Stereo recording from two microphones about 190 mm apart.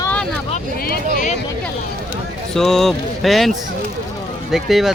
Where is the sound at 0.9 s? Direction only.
55° left (ahead or behind).